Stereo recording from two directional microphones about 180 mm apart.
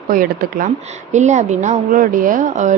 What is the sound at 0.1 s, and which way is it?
Speech, 50° right (ahead or behind).